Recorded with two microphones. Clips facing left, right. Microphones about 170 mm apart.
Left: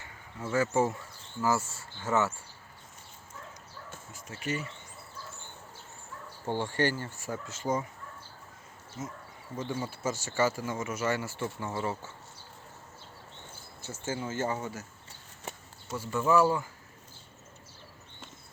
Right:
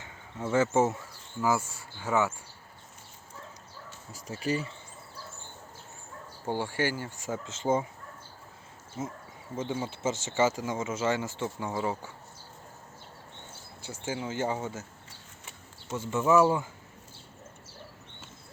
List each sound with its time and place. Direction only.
0.0 s speech: 20° right (ahead or behind)
4.1 s speech: 35° right (ahead or behind)
6.4 s speech: 10° right (ahead or behind); by 7.9 s 25° right (ahead or behind)
9.0 s speech: 25° right (ahead or behind)
13.8 s speech: 15° right (ahead or behind)
15.9 s speech: 20° right (ahead or behind)